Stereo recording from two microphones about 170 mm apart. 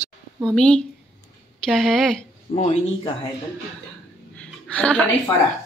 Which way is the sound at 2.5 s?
40° left (ahead or behind).